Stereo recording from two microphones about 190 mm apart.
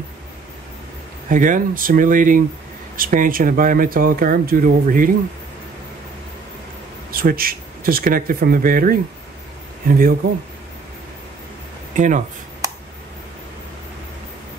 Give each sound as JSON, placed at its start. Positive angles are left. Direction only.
{"t": 1.3, "sound": "speech", "side_deg": -45}
{"t": 7.1, "sound": "speech", "side_deg": -50}
{"t": 11.9, "sound": "speech", "side_deg": -40}